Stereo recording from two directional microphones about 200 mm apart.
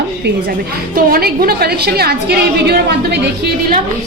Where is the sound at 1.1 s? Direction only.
50° right (ahead or behind).